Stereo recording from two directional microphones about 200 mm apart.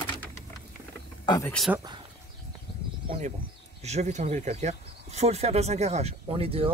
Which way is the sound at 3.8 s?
35° right (ahead or behind).